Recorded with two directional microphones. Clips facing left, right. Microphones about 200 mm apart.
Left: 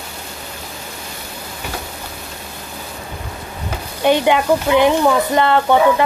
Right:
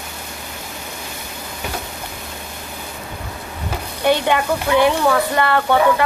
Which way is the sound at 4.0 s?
15° left (ahead or behind).